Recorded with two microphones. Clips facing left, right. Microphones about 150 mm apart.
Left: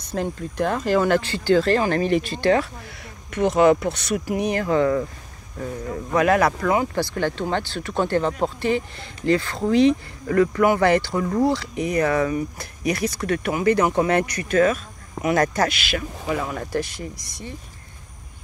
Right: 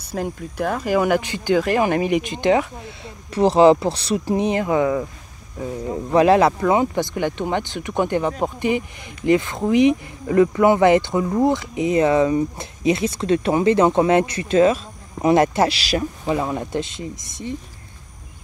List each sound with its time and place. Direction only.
0.0 s speech: 5° right (ahead or behind)
3.3 s speech: 30° right (ahead or behind); by 5.0 s 15° right (ahead or behind)
5.9 s speech: 25° right (ahead or behind)